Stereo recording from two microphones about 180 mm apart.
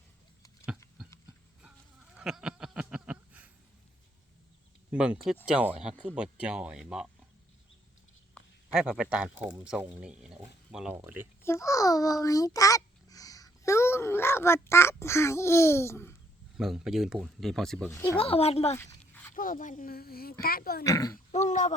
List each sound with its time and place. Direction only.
2.1 s a sound: 5° right (ahead or behind)
4.9 s speech: 5° right (ahead or behind)
8.4 s a sound: 5° right (ahead or behind)
9.6 s speech: 5° right (ahead or behind)
11.4 s a child's voice: 15° left (ahead or behind)
16.6 s speech: 5° right (ahead or behind)
17.9 s speech: 15° left (ahead or behind)
18.2 s speech: 35° left (ahead or behind)
18.8 s a sound: 10° left (ahead or behind)
19.4 s speech: 50° left (ahead or behind)
20.8 s speech: 20° left (ahead or behind)
21.3 s speech: 40° left (ahead or behind)